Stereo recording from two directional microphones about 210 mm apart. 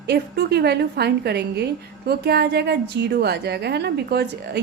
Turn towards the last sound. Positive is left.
turn(degrees=-50)  # may be behind; listen again after turning